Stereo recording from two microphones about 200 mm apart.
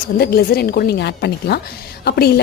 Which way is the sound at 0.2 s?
50° left (ahead or behind).